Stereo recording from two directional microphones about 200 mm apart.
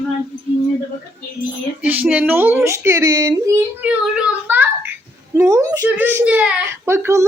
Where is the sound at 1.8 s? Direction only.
10° right (ahead or behind).